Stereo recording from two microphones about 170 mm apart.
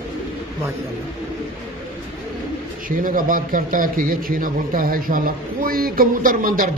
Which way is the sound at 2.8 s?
55° right (ahead or behind).